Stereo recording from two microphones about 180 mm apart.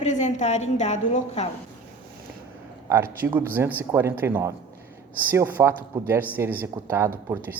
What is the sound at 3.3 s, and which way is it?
Speech, 10° right (ahead or behind).